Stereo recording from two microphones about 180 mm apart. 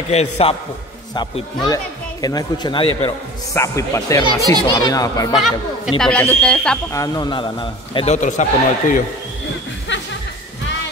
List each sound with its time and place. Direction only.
0.1 s a man's voice: 35° left (ahead or behind)
3.5 s a man's voice: 15° left (ahead or behind)
5.3 s speech: centre (ahead or behind)
6.9 s a man's voice: 20° left (ahead or behind); by 9.0 s 45° left (ahead or behind)